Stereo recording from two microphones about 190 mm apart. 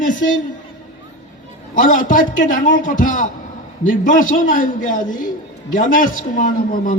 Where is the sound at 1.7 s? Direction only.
45° left (ahead or behind).